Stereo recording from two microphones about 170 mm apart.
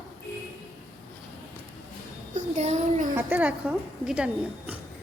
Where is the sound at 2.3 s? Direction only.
45° right (ahead or behind).